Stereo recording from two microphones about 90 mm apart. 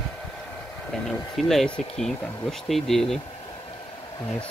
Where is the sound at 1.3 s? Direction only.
5° left (ahead or behind).